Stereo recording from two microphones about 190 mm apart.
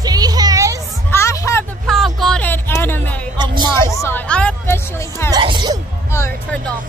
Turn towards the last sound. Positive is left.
turn(degrees=10)  # may be behind; listen again after turning